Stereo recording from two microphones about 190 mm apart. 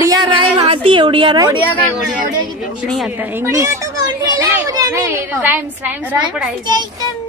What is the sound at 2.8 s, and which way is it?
A woman's voice, centre (ahead or behind).